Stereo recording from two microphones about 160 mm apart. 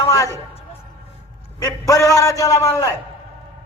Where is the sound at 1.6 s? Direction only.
20° left (ahead or behind).